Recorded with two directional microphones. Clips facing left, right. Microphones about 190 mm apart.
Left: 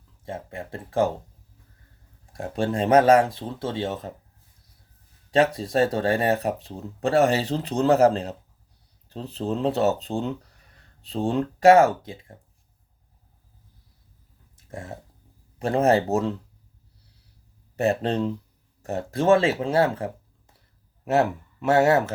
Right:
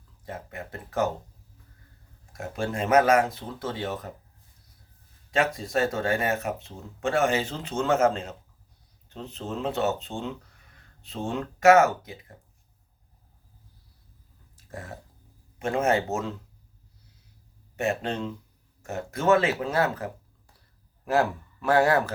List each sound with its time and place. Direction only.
0.3 s speech: 30° left (ahead or behind)
2.3 s speech: 30° left (ahead or behind)
5.3 s speech: 30° left (ahead or behind)
14.5 s burping: 25° left (ahead or behind)
15.5 s speech: 35° left (ahead or behind)
17.7 s speech: 35° left (ahead or behind)